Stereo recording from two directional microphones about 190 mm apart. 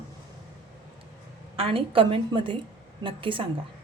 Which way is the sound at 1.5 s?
30° right (ahead or behind).